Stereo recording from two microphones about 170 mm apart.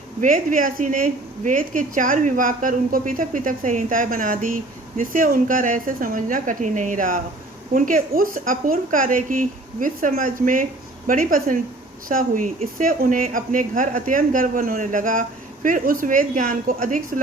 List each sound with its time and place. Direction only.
0.2 s a woman's voice: 50° right (ahead or behind)